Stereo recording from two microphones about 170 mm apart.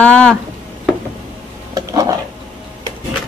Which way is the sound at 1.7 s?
20° right (ahead or behind).